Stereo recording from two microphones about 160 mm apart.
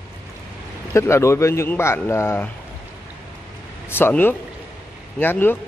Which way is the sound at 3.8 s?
15° left (ahead or behind).